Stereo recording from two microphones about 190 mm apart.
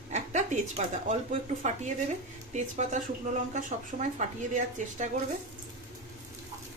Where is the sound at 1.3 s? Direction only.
40° right (ahead or behind).